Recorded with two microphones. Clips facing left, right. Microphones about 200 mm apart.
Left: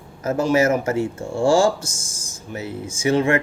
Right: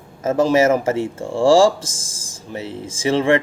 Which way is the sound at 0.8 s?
30° right (ahead or behind).